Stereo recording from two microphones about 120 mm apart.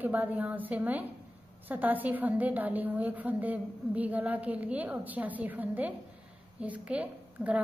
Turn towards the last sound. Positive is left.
turn(degrees=-10)  # may be behind; listen again after turning